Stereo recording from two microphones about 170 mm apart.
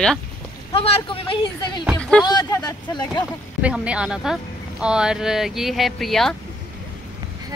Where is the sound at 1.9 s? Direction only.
5° left (ahead or behind).